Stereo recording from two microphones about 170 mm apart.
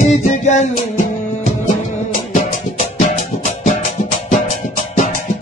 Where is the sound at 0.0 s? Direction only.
45° left (ahead or behind).